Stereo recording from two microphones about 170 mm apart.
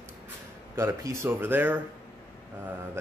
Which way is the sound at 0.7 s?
15° right (ahead or behind).